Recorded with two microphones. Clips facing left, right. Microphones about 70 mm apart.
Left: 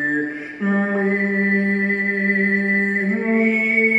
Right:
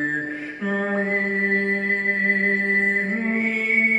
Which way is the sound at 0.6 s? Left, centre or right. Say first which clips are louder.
Left 5 dB; centre.